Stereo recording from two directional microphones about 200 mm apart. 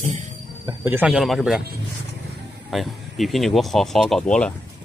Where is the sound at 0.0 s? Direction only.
35° right (ahead or behind).